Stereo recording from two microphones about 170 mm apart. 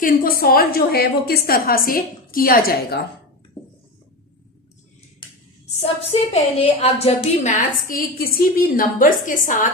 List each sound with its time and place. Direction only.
0.0 s a woman's voice: 60° left (ahead or behind)
5.8 s a woman's voice: 35° left (ahead or behind)
7.9 s a woman's voice: 60° left (ahead or behind)